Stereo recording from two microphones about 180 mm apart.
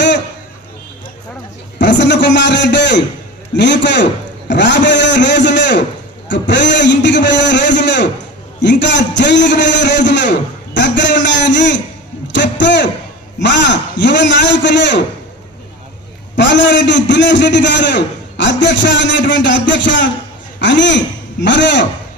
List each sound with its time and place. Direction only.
1.8 s a man's voice: 75° left (ahead or behind)
16.3 s a man's voice: 80° left